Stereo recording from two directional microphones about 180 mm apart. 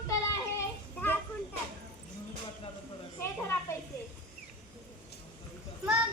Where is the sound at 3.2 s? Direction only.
15° left (ahead or behind).